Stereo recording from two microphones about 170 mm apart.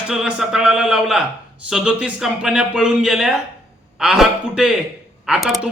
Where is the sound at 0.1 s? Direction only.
5° right (ahead or behind).